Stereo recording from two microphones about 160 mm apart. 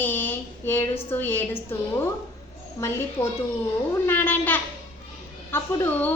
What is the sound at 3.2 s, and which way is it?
A woman's voice, 15° left (ahead or behind).